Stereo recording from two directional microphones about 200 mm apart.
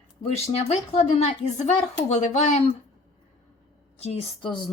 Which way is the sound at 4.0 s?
30° left (ahead or behind).